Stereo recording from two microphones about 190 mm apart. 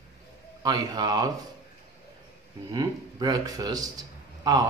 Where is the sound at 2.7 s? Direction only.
20° right (ahead or behind).